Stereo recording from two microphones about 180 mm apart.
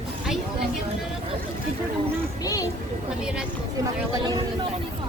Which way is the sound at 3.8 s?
20° right (ahead or behind).